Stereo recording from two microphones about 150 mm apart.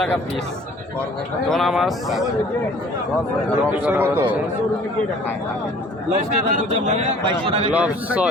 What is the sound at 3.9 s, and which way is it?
Speech, 15° right (ahead or behind).